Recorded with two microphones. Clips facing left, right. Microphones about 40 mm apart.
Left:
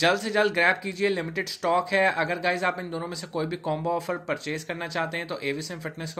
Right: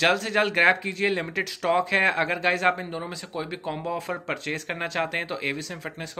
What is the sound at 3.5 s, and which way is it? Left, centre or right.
Speech, right.